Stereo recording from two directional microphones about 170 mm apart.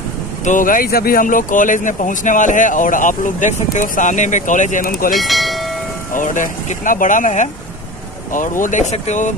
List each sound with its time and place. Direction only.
0.5 s speech: 50° left (ahead or behind)
5.1 s speech: centre (ahead or behind)
6.1 s speech: 50° left (ahead or behind)